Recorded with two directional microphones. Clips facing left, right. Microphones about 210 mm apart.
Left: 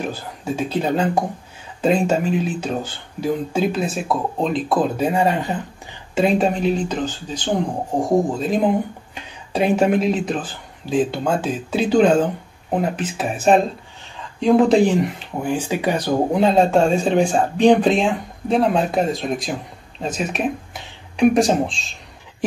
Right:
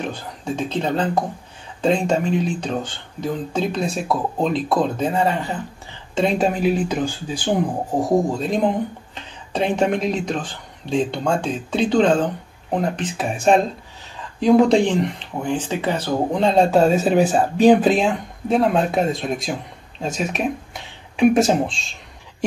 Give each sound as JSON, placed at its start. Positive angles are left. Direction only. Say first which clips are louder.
{"t": 0.0, "sound": "speech", "louder": "left 1 dB", "side_deg": 5}
{"t": 6.1, "sound": "speech", "louder": "left 2 dB", "side_deg": 0}